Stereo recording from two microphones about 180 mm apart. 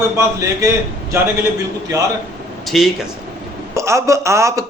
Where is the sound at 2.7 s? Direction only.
Centre (ahead or behind).